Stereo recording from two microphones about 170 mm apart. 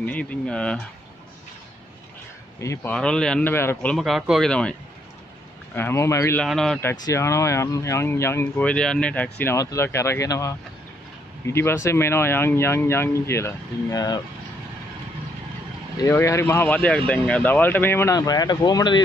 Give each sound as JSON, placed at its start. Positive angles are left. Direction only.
{"t": 0.0, "sound": "speech", "side_deg": 10}
{"t": 2.6, "sound": "speech", "side_deg": 15}
{"t": 3.9, "sound": "speech", "side_deg": 0}
{"t": 5.8, "sound": "speech", "side_deg": 15}
{"t": 6.4, "sound": "speech", "side_deg": 0}
{"t": 6.8, "sound": "speech", "side_deg": 15}
{"t": 16.0, "sound": "speech", "side_deg": 15}